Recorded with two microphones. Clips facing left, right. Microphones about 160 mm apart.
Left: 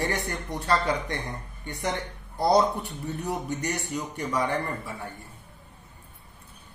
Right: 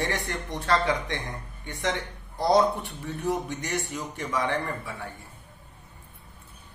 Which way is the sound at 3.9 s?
Centre (ahead or behind).